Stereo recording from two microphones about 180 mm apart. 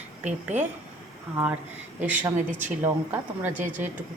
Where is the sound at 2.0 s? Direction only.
10° right (ahead or behind).